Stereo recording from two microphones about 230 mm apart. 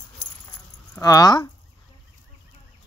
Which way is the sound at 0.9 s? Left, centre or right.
Centre.